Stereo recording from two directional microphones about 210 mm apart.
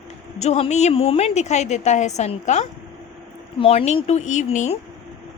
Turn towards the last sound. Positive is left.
turn(degrees=30)  # may be behind; listen again after turning